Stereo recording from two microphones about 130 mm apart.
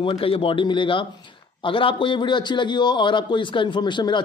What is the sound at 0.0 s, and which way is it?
A man's voice, 45° left (ahead or behind).